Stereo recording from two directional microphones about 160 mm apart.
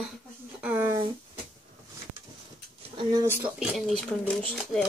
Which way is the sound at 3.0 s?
25° right (ahead or behind).